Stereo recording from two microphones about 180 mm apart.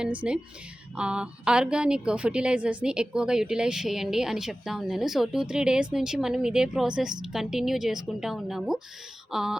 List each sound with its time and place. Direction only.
0.0 s a woman's voice: 5° right (ahead or behind)